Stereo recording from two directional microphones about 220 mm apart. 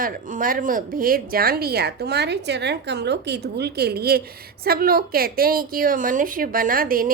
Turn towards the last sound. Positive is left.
turn(degrees=-40)  # may be behind; listen again after turning